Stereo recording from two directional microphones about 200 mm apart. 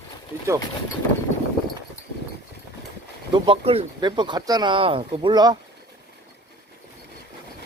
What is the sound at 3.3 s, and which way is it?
Speech, 25° right (ahead or behind).